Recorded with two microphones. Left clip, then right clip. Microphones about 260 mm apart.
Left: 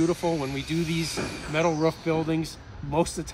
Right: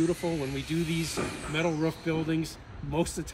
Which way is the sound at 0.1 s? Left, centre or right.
Centre.